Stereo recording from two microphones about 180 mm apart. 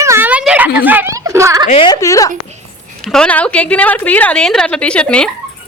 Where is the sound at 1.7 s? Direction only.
25° left (ahead or behind).